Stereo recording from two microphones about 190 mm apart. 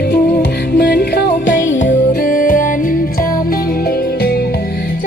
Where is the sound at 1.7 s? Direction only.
80° left.